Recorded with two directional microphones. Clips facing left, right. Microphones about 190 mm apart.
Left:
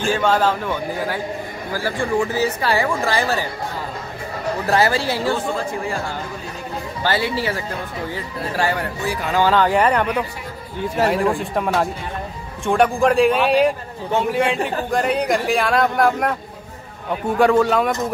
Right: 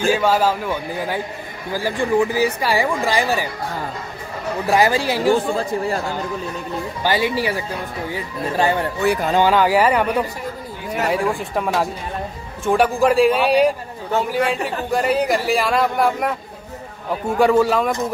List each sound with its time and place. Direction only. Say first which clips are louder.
0.1 s speech: even; 10° right (ahead or behind)
4.6 s speech: right 2 dB; 15° right (ahead or behind)
7.0 s speech: right 1 dB; 15° right (ahead or behind)
9.4 s a man's voice: left 1 dB; 10° right (ahead or behind)